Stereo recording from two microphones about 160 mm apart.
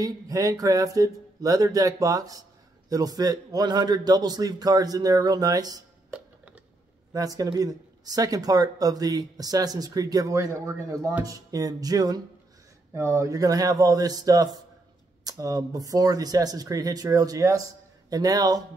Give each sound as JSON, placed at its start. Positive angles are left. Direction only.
{"t": 0.0, "sound": "speech", "side_deg": -20}
{"t": 6.1, "sound": "a sound", "side_deg": -10}
{"t": 7.1, "sound": "speech", "side_deg": -20}